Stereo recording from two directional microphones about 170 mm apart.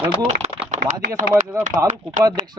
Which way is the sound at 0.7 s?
65° right (ahead or behind).